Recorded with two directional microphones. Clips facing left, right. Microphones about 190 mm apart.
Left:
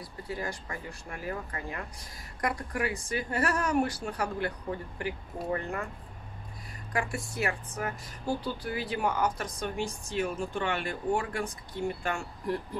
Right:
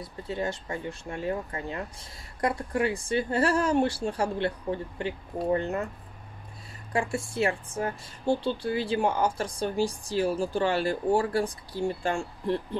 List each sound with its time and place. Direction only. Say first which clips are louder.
0.0 s speech: right 5 dB; 25° right (ahead or behind)
6.9 s speech: right 4 dB; 25° right (ahead or behind)